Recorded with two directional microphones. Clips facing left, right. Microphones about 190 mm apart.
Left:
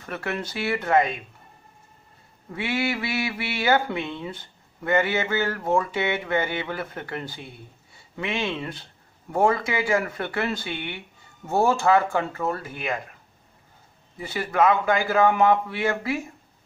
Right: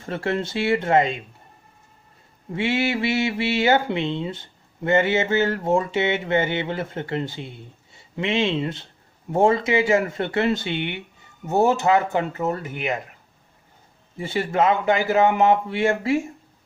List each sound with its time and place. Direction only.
0.0 s speech: 25° right (ahead or behind)
2.5 s speech: 25° right (ahead or behind)
14.1 s speech: 25° right (ahead or behind)